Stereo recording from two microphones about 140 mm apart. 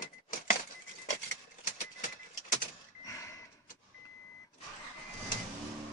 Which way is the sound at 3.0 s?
25° left (ahead or behind).